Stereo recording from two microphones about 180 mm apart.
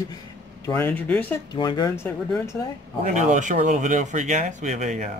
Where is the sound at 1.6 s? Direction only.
25° left (ahead or behind).